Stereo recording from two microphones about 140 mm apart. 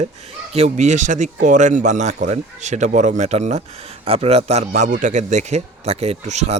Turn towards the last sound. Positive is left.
turn(degrees=-55)  # may be behind; listen again after turning